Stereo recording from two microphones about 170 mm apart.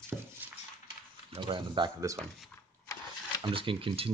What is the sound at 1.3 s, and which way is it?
Speech, 30° right (ahead or behind).